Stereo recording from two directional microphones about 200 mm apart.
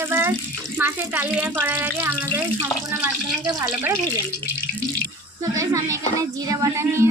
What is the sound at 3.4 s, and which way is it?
Speech, 20° right (ahead or behind).